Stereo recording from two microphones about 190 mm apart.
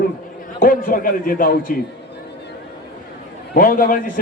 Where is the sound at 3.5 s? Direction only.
45° left (ahead or behind).